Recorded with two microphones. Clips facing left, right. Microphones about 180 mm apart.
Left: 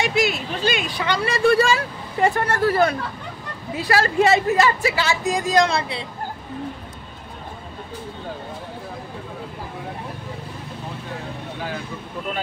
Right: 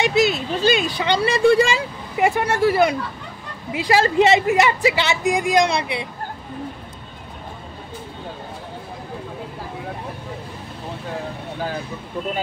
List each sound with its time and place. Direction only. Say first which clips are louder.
0.0 s speech: right 3 dB; 25° right (ahead or behind)